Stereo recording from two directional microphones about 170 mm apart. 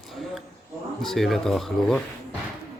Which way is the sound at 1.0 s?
Centre (ahead or behind).